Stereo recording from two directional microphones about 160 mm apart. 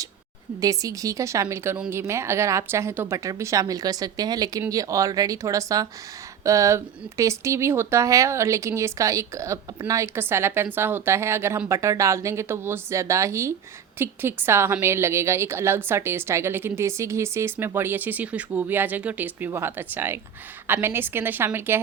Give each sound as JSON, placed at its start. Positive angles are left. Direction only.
{"t": 0.6, "sound": "a woman's voice", "side_deg": -20}